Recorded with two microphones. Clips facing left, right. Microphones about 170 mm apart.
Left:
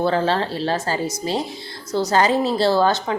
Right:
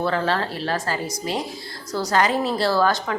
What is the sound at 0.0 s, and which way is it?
A woman's voice, 30° left (ahead or behind).